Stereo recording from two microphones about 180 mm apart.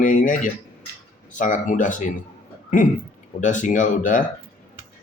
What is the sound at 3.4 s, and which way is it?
Speech, 45° left (ahead or behind).